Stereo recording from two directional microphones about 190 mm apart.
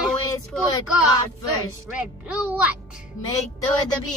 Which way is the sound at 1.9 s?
5° right (ahead or behind).